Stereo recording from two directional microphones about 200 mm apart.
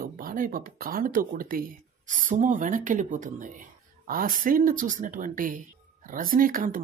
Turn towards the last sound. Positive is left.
turn(degrees=-45)  # may be behind; listen again after turning